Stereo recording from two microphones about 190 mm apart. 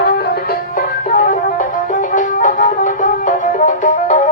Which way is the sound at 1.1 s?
45° left (ahead or behind).